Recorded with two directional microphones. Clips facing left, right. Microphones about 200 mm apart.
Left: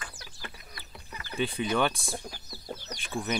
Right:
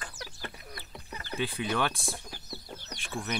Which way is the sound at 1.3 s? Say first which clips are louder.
Left 3 dB; centre (ahead or behind).